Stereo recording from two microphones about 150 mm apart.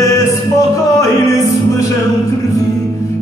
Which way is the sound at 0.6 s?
20° left (ahead or behind).